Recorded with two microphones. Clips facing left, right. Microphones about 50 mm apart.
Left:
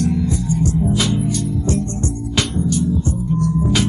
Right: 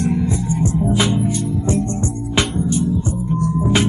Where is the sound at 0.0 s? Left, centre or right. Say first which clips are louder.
Even; right.